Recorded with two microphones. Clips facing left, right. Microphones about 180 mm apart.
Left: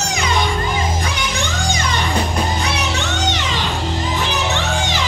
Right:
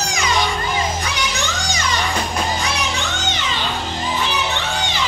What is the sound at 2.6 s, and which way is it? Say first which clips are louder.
Music: left 2 dB; 75° left (ahead or behind).